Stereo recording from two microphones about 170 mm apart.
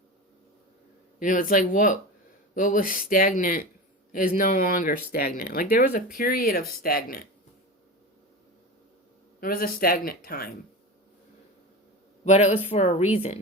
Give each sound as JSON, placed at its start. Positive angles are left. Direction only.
{"t": 1.2, "sound": "speech", "side_deg": 50}
{"t": 9.4, "sound": "speech", "side_deg": 55}
{"t": 12.2, "sound": "a woman's voice", "side_deg": 40}